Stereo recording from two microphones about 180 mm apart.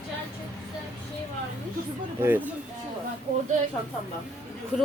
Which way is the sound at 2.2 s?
10° right (ahead or behind).